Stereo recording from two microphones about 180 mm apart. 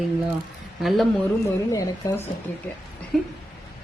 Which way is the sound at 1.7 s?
20° left (ahead or behind).